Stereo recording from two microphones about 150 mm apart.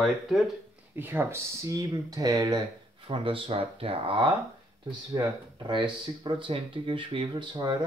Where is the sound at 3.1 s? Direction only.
35° right (ahead or behind).